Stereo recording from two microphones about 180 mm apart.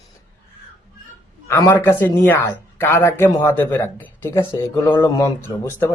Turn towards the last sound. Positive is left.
turn(degrees=15)  # may be behind; listen again after turning